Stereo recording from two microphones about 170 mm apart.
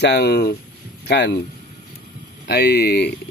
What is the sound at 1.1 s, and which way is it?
Speech, 90° left.